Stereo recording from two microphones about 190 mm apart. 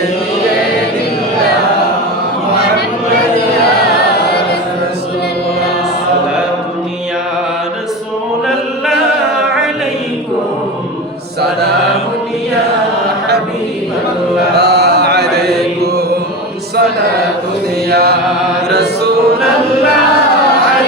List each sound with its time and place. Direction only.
14.6 s mantra: 60° right (ahead or behind)
17.9 s mantra: 55° right (ahead or behind)